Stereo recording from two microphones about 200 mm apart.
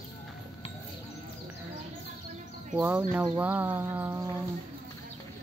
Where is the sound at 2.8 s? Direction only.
10° right (ahead or behind).